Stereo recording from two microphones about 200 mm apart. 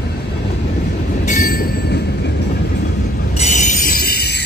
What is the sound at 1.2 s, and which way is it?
Train, 40° left (ahead or behind).